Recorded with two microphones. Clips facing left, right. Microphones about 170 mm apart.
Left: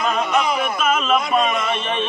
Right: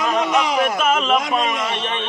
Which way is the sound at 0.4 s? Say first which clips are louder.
Right 2 dB; 90° right.